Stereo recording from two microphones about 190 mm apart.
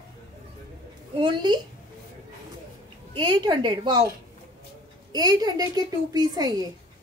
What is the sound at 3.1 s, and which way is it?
Speech, 25° right (ahead or behind).